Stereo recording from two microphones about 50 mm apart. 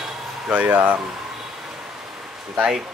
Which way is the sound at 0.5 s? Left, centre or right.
Right.